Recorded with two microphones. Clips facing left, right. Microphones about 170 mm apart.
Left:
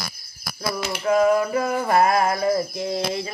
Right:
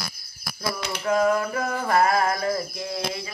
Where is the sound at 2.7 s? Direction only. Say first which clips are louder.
Left 5 dB; 30° left (ahead or behind).